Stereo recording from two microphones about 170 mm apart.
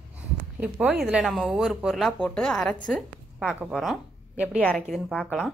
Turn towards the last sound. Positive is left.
turn(degrees=5)  # may be behind; listen again after turning